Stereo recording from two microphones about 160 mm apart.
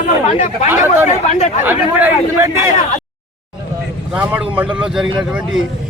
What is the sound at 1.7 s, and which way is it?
A man's voice, 10° right (ahead or behind).